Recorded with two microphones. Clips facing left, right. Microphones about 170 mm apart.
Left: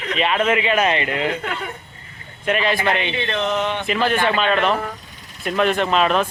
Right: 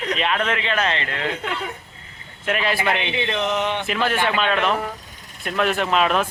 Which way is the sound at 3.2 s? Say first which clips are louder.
Left 1 dB; 15° right (ahead or behind).